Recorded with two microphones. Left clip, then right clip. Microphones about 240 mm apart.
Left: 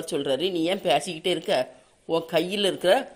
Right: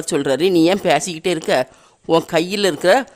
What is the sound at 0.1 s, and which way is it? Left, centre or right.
A man's voice, right.